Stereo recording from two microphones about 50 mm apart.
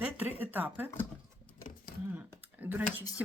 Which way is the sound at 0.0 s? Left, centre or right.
Right.